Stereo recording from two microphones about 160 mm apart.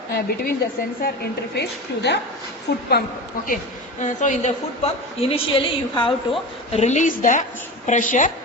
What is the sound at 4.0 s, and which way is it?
A woman's voice, 50° left (ahead or behind).